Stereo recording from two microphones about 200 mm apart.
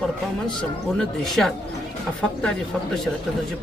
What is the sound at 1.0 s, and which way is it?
Speech, centre (ahead or behind).